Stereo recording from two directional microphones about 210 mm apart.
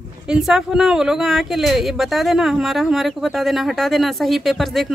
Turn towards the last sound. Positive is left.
turn(degrees=0)  # may be behind; listen again after turning